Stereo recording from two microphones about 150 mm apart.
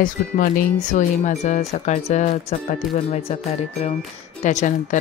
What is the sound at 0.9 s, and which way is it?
Speech, 50° left (ahead or behind).